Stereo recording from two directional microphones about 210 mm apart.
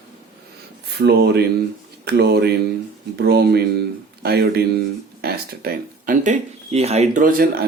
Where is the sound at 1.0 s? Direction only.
50° right (ahead or behind).